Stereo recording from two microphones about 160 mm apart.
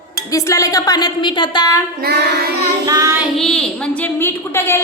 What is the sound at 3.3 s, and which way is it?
A woman's voice, 5° left (ahead or behind).